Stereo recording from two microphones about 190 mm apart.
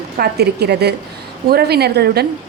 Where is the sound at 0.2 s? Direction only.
60° right (ahead or behind).